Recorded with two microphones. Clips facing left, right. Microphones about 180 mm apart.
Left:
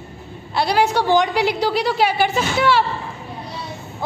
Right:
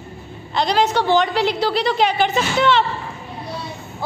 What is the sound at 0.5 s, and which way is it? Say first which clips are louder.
A woman's voice: even; 10° left (ahead or behind).